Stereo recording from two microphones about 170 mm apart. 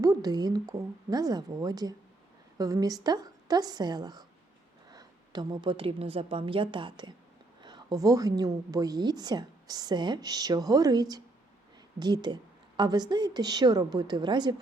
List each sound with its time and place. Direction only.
0.0 s a woman's voice: 20° right (ahead or behind)